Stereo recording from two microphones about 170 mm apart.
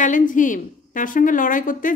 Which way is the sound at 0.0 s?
50° left (ahead or behind).